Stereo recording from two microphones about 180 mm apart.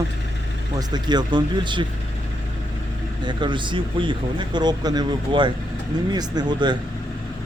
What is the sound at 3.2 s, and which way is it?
Speech, 25° right (ahead or behind).